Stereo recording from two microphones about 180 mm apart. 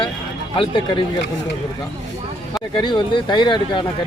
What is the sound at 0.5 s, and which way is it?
Speech, 30° left (ahead or behind).